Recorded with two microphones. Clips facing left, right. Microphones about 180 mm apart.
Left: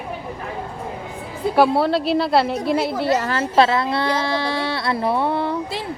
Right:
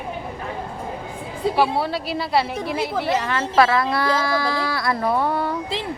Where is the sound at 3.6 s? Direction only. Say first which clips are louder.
Left 1 dB; 25° left (ahead or behind).